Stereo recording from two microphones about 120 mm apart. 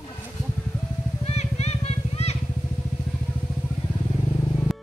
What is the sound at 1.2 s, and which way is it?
Vehicle, 60° left (ahead or behind).